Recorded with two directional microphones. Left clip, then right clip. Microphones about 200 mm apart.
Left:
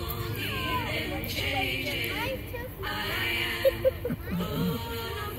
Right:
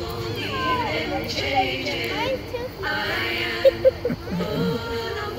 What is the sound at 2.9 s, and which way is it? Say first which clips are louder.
Music: right 5 dB; 45° left (ahead or behind).